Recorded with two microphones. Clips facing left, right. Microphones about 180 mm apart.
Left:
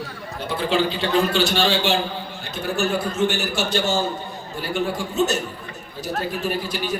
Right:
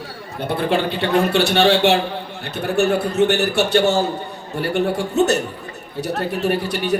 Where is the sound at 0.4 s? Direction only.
55° right (ahead or behind).